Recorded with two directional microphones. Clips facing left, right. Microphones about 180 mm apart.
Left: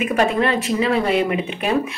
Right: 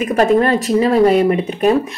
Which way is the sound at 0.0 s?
40° right (ahead or behind).